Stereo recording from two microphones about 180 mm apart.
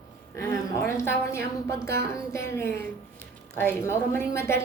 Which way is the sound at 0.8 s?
15° left (ahead or behind).